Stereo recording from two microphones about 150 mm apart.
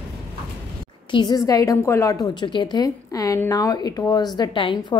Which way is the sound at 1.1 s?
30° left (ahead or behind).